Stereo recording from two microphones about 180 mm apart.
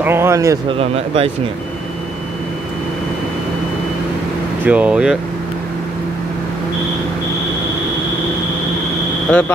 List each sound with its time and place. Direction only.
0.0 s speech: 15° right (ahead or behind)
0.7 s speech: 30° right (ahead or behind)
4.6 s speech: 5° right (ahead or behind)